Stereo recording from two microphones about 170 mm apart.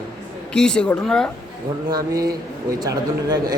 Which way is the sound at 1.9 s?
20° right (ahead or behind).